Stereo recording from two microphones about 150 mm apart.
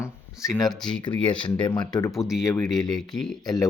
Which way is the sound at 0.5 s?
Centre (ahead or behind).